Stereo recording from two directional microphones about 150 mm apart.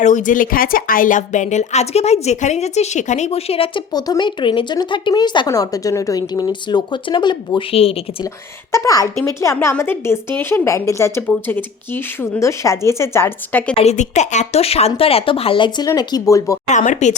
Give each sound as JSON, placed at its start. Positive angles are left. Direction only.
{"t": 0.0, "sound": "a woman's voice", "side_deg": 55}
{"t": 3.9, "sound": "speech", "side_deg": 25}
{"t": 8.7, "sound": "a woman's voice", "side_deg": 20}
{"t": 13.7, "sound": "speech", "side_deg": 50}
{"t": 16.6, "sound": "a woman's voice", "side_deg": 55}